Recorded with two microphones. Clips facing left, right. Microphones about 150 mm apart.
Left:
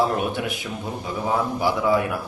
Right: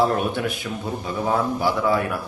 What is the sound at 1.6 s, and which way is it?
Speech, 15° left (ahead or behind).